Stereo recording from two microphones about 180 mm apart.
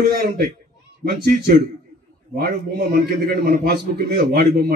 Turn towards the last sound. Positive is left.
turn(degrees=-60)  # may be behind; listen again after turning